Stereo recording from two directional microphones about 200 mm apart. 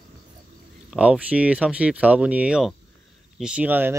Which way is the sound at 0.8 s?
5° right (ahead or behind).